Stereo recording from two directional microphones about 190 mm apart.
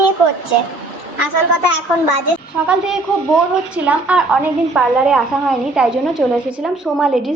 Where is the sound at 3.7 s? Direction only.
5° right (ahead or behind).